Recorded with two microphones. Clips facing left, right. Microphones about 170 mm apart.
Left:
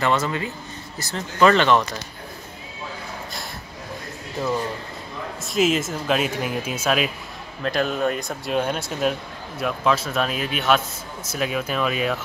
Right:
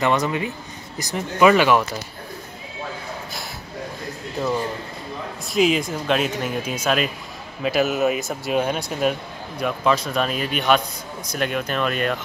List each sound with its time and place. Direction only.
0.0 s speech: 15° right (ahead or behind)
5.5 s speech: centre (ahead or behind)
7.6 s speech: 5° right (ahead or behind)